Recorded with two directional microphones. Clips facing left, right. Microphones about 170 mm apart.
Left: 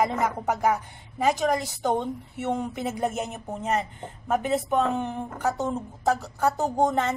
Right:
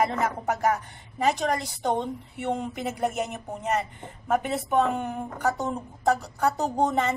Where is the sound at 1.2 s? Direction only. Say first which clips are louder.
Left 1 dB; 5° left (ahead or behind).